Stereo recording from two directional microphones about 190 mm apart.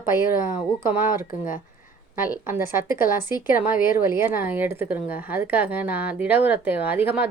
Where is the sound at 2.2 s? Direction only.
10° right (ahead or behind).